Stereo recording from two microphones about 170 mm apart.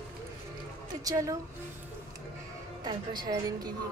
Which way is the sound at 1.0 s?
20° right (ahead or behind).